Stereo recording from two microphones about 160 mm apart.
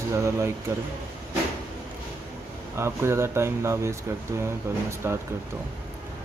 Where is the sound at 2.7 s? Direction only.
15° right (ahead or behind).